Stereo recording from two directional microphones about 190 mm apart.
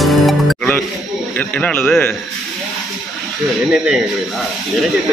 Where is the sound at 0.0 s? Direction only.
Centre (ahead or behind).